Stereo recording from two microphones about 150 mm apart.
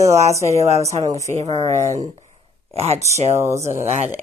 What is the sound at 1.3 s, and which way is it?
A woman's voice, 45° right (ahead or behind).